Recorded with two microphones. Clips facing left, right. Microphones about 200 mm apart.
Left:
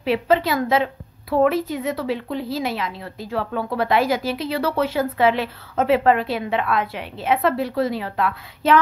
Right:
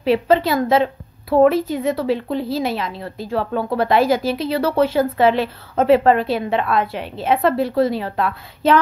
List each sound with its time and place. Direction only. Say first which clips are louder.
0.0 s a woman's voice: right 3 dB; 30° right (ahead or behind)